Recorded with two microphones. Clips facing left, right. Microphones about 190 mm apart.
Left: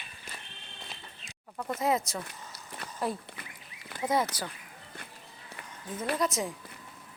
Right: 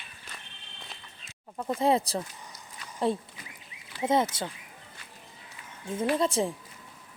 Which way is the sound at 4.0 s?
25° right (ahead or behind).